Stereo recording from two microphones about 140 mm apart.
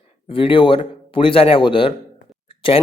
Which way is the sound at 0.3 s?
40° left (ahead or behind).